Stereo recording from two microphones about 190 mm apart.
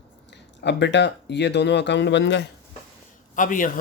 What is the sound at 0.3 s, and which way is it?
Speech, 65° left (ahead or behind).